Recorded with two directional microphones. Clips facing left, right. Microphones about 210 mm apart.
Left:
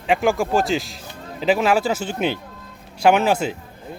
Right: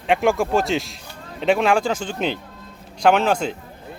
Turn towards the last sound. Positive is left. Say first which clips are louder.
# left 1 dB
turn(degrees=5)  # may be behind; listen again after turning